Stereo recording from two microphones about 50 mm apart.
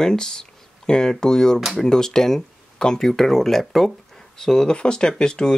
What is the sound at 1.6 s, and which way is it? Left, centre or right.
Speech, centre.